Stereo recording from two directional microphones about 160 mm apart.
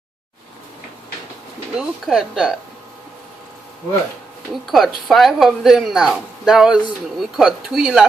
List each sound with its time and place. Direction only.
1.8 s speech: 5° right (ahead or behind)
4.6 s speech: centre (ahead or behind)